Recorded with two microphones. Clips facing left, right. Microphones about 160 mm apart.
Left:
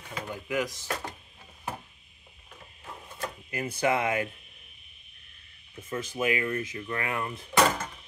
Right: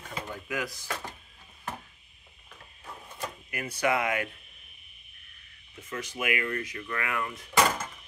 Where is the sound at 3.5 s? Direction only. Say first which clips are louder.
Left 1 dB; 30° left (ahead or behind).